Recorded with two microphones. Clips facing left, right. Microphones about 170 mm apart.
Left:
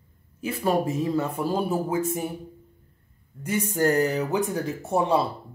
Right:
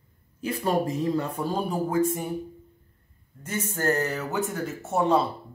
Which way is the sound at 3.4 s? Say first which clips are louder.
Left 4 dB; 15° left (ahead or behind).